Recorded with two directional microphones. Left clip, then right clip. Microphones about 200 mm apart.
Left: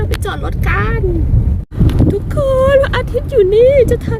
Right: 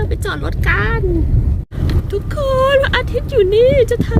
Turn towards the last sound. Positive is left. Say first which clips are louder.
# left 3 dB
turn(degrees=10)  # may be behind; listen again after turning